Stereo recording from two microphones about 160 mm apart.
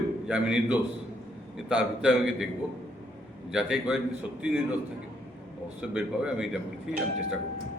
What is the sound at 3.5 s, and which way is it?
Speech, 5° right (ahead or behind).